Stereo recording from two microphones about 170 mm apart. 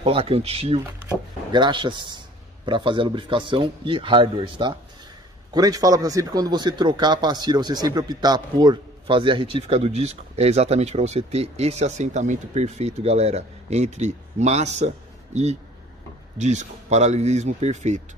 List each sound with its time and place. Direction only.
0.0 s a man's voice: 35° right (ahead or behind)
16.3 s a man's voice: 45° right (ahead or behind)